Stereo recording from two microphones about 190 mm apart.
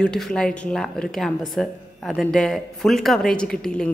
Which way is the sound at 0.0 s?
5° left (ahead or behind).